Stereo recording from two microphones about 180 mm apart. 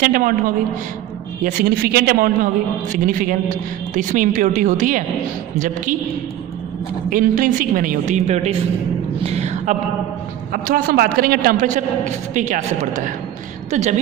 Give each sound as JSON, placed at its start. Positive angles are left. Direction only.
{"t": 0.0, "sound": "a man's voice", "side_deg": -50}
{"t": 1.4, "sound": "a man's voice", "side_deg": -55}
{"t": 7.1, "sound": "a man's voice", "side_deg": -50}
{"t": 9.2, "sound": "a sound", "side_deg": -35}
{"t": 10.5, "sound": "a man's voice", "side_deg": -55}